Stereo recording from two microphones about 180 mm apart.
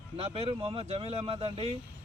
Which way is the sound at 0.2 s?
35° right (ahead or behind).